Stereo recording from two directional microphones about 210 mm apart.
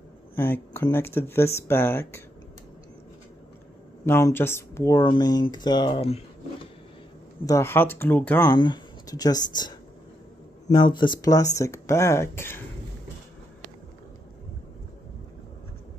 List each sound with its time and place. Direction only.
0.4 s speech: 10° left (ahead or behind)
4.0 s speech: 10° left (ahead or behind); by 6.7 s 30° left (ahead or behind)
7.4 s speech: 10° left (ahead or behind)
8.5 s speech: 20° left (ahead or behind)